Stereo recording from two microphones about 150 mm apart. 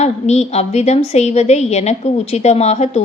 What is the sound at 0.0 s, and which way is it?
A woman's voice, 45° left (ahead or behind).